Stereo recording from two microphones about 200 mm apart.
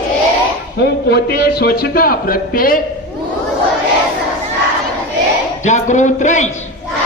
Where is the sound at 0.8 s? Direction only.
55° left (ahead or behind).